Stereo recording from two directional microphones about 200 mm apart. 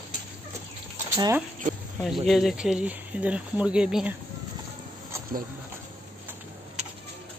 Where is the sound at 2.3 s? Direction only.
Centre (ahead or behind).